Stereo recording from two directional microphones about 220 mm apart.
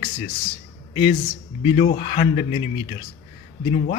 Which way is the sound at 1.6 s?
25° left (ahead or behind).